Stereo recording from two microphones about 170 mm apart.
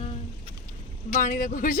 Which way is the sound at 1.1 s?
50° left (ahead or behind).